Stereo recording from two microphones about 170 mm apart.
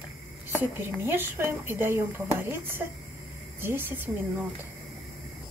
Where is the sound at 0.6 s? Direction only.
15° right (ahead or behind).